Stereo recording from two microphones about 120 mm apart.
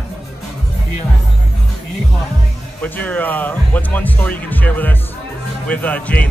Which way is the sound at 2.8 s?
15° left (ahead or behind).